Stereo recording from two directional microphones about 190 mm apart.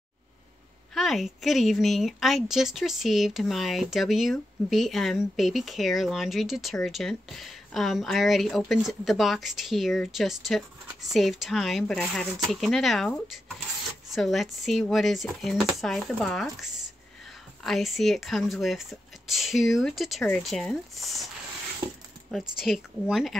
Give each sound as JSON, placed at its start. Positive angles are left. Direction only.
{"t": 0.9, "sound": "speech", "side_deg": 0}
{"t": 21.8, "sound": "speech", "side_deg": -25}
{"t": 22.6, "sound": "speech", "side_deg": 0}